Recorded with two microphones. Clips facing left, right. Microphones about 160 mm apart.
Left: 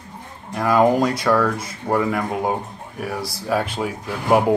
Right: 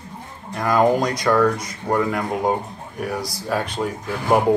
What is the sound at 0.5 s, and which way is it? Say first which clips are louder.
Speech: left 1 dB; 5° left (ahead or behind).